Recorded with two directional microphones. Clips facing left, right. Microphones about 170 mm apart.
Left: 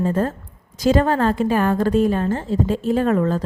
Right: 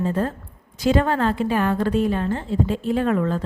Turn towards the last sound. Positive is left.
turn(degrees=40)  # may be behind; listen again after turning